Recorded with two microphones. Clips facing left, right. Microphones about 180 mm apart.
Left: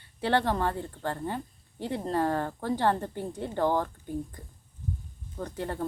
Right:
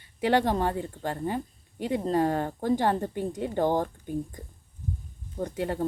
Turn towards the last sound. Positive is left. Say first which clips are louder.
# right 4 dB
turn(degrees=-15)  # may be behind; listen again after turning